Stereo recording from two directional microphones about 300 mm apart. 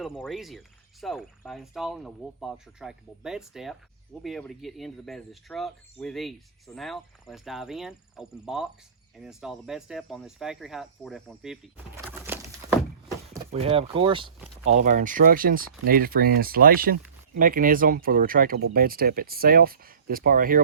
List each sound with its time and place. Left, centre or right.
0.0 s speech: centre; by 20.6 s right